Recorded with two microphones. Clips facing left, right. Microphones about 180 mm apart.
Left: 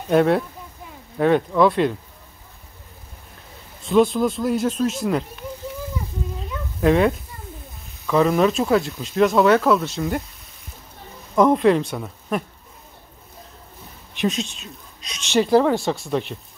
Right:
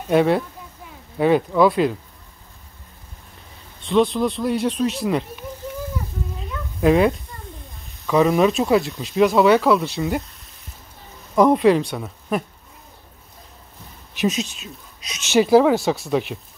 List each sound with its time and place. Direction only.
0.1 s speech: centre (ahead or behind)
3.8 s speech: centre (ahead or behind)
6.8 s speech: 5° right (ahead or behind)
11.3 s speech: 5° right (ahead or behind)
14.1 s speech: 5° right (ahead or behind)